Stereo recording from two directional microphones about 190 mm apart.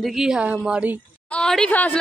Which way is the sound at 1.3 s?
5° left (ahead or behind).